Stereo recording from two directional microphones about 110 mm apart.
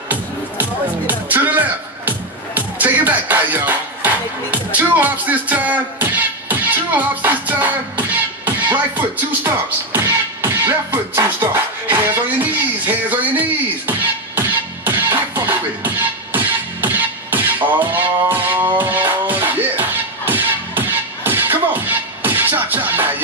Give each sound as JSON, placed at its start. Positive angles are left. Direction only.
{"t": 0.1, "sound": "music", "side_deg": -15}